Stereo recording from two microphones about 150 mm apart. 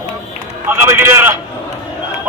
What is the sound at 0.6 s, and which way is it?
Speech, 15° right (ahead or behind).